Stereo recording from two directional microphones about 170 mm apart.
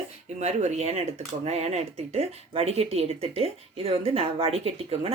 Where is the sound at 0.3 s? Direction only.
40° right (ahead or behind).